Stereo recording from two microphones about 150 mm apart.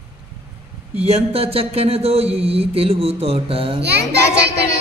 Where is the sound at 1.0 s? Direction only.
40° right (ahead or behind).